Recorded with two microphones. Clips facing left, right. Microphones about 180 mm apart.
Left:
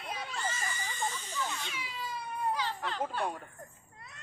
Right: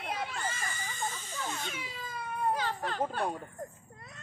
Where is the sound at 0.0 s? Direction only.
60° right (ahead or behind).